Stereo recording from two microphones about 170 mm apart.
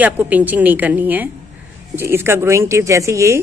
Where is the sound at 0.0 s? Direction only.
10° right (ahead or behind).